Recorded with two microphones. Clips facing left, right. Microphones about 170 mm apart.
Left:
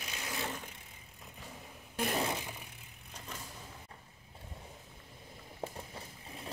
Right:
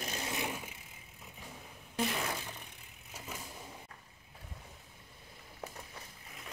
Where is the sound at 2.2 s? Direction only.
20° left (ahead or behind).